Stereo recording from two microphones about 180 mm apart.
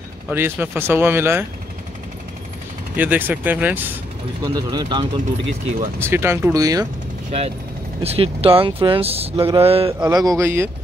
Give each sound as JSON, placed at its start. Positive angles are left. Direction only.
{"t": 0.3, "sound": "speech", "side_deg": -10}
{"t": 3.0, "sound": "speech", "side_deg": -10}
{"t": 4.4, "sound": "speech", "side_deg": -25}
{"t": 5.9, "sound": "speech", "side_deg": -15}
{"t": 7.2, "sound": "speech", "side_deg": -35}
{"t": 10.0, "sound": "speech", "side_deg": -20}